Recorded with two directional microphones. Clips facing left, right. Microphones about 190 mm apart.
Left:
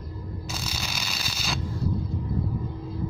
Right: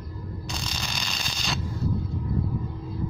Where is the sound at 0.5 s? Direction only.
5° left (ahead or behind).